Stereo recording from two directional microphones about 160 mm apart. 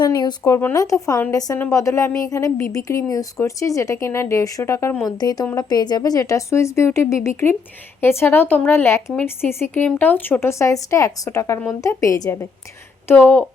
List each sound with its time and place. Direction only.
0.0 s speech: 25° left (ahead or behind)